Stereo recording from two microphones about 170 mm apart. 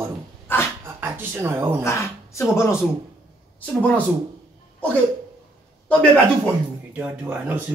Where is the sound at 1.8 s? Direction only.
15° left (ahead or behind).